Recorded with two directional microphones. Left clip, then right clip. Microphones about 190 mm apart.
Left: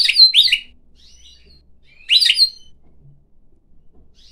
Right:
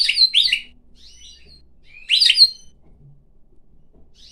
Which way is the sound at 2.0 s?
15° left (ahead or behind).